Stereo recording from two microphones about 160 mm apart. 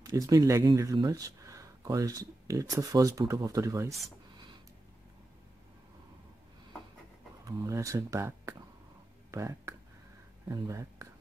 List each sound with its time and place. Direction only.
0.0 s speech: 20° right (ahead or behind)
7.4 s speech: 20° right (ahead or behind)